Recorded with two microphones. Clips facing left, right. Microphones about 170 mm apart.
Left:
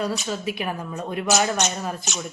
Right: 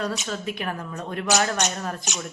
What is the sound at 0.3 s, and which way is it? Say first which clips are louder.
Speech: left 2 dB; 5° left (ahead or behind).